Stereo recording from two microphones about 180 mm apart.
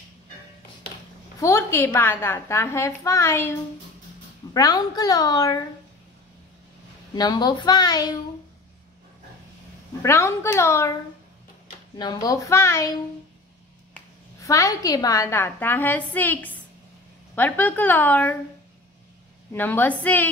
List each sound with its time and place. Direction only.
1.4 s a woman's voice: 15° left (ahead or behind)
4.6 s a child's voice: 20° left (ahead or behind)
7.2 s a child's voice: 25° left (ahead or behind)
10.0 s a woman's voice: 15° left (ahead or behind)
12.0 s a woman's voice: 25° left (ahead or behind)
14.4 s a woman's voice: 20° left (ahead or behind)
19.5 s a woman's voice: 10° left (ahead or behind)